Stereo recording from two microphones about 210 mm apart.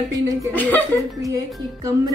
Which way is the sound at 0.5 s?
10° left (ahead or behind).